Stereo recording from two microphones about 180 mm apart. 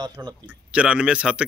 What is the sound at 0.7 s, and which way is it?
Speech, 5° right (ahead or behind).